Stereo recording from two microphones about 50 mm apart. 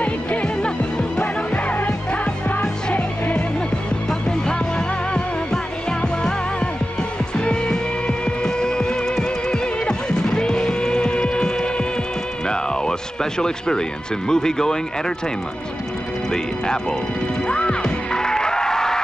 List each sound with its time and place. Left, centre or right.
0.0 s music: left
4.1 s music: centre
12.4 s speech: centre
16.3 s speech: centre
17.5 s music: centre